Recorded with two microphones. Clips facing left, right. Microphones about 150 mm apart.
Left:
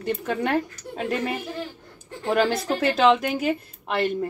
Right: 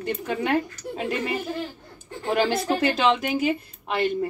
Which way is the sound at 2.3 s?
5° right (ahead or behind).